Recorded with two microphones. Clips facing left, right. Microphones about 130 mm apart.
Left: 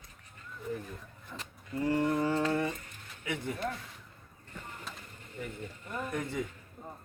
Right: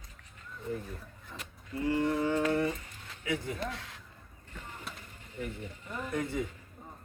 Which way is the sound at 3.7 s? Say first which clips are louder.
Even; 90° right.